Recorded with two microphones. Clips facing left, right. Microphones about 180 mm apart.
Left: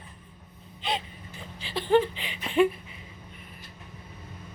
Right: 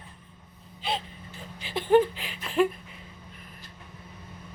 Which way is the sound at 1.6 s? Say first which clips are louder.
Right 2 dB; 10° right (ahead or behind).